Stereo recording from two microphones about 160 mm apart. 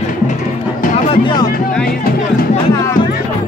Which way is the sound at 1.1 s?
30° left (ahead or behind).